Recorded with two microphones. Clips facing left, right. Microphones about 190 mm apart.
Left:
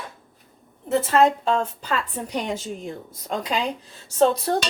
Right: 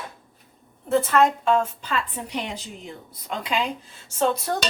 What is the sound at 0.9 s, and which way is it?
Speech, 25° left (ahead or behind).